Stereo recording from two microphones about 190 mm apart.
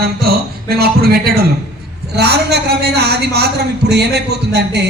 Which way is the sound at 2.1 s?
60° right (ahead or behind).